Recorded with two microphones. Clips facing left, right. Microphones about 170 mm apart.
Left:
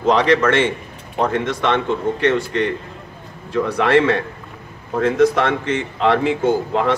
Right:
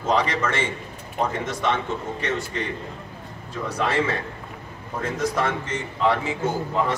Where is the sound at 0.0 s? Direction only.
70° left (ahead or behind).